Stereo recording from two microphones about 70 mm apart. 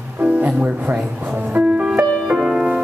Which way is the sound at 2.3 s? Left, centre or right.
Centre.